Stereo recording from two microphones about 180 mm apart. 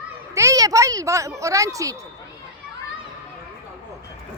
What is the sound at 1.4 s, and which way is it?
Speech, 15° right (ahead or behind).